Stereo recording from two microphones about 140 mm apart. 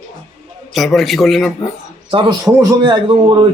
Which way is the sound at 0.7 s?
Centre (ahead or behind).